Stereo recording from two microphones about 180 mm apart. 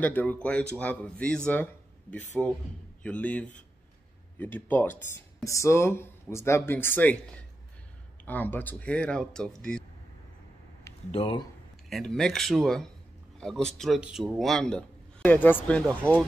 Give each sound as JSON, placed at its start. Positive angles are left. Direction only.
{"t": 0.0, "sound": "speech", "side_deg": 10}
{"t": 11.1, "sound": "speech", "side_deg": 30}
{"t": 11.9, "sound": "a man's voice", "side_deg": 5}